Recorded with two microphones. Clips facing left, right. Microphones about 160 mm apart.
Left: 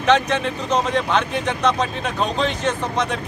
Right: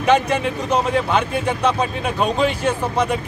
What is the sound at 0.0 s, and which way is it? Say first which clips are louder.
Speech: right 1 dB; 10° right (ahead or behind).